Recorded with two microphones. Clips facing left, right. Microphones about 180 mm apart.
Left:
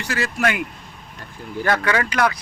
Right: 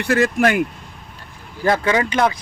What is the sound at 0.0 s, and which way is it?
Speech, 55° right (ahead or behind).